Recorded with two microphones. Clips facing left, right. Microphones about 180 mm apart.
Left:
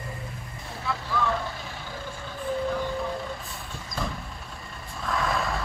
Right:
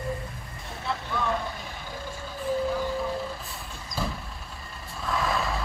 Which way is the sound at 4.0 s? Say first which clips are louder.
Right 1 dB; 5° right (ahead or behind).